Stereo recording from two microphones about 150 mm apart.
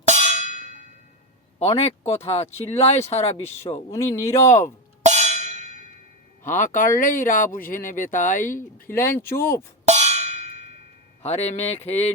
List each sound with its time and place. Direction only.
0.0 s a sound: 50° right (ahead or behind)
1.5 s speech: 45° left (ahead or behind)
3.8 s speech: 20° left (ahead or behind)
5.0 s percussion: 50° right (ahead or behind)
6.4 s speech: 60° left (ahead or behind)
8.4 s speech: 15° left (ahead or behind)
9.8 s cowbell: 50° right (ahead or behind)
11.2 s speech: 45° left (ahead or behind)